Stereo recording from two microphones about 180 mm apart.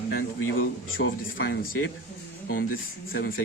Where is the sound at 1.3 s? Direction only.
90° left.